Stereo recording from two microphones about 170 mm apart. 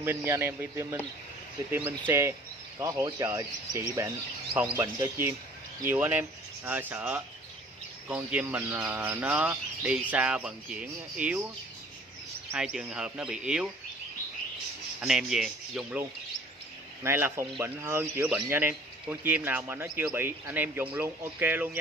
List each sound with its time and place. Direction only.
0.0 s a man's voice: 10° right (ahead or behind)
12.4 s speech: 5° right (ahead or behind)
15.0 s speech: 5° right (ahead or behind)
17.0 s a man's voice: 15° right (ahead or behind)